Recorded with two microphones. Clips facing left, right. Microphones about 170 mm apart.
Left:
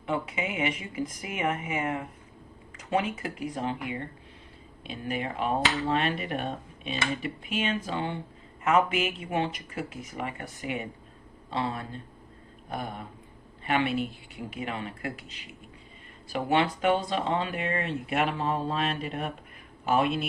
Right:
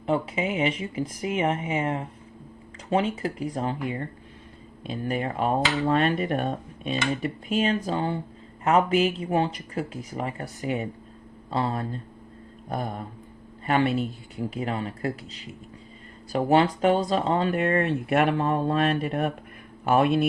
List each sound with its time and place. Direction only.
0.0 s speech: 30° right (ahead or behind); by 20.2 s 55° right (ahead or behind)